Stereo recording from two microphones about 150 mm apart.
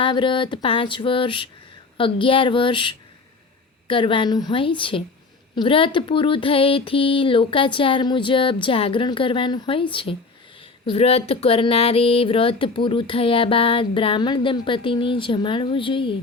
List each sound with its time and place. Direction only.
0.0 s speech: 35° left (ahead or behind)